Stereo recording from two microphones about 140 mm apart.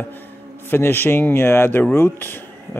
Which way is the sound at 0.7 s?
15° left (ahead or behind).